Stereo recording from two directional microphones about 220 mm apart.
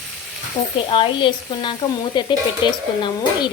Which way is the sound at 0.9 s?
20° left (ahead or behind).